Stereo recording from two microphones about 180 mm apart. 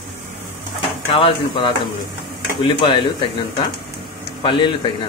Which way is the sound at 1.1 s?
30° left (ahead or behind).